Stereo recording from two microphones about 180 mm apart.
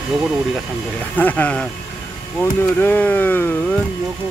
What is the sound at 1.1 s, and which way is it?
Speech, 10° left (ahead or behind).